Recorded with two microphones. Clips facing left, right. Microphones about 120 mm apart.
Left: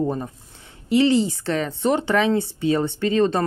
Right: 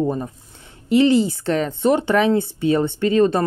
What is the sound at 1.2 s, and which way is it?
Speech, 15° right (ahead or behind).